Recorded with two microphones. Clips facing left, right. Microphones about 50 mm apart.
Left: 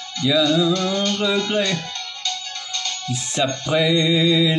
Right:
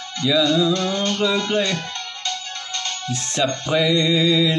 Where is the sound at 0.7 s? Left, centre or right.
Right.